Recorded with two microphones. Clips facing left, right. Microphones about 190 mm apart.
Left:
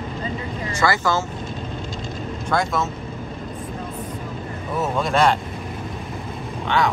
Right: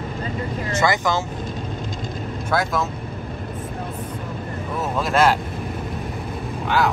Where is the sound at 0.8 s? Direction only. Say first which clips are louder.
Even; 15° right (ahead or behind).